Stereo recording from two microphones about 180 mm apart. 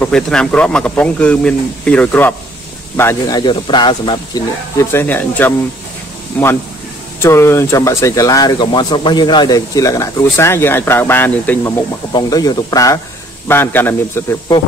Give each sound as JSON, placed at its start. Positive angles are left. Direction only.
{"t": 0.0, "sound": "speech", "side_deg": 5}
{"t": 12.1, "sound": "speech", "side_deg": 20}